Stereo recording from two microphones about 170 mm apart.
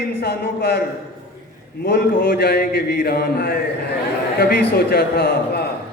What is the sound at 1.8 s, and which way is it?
A man's voice, 65° left (ahead or behind).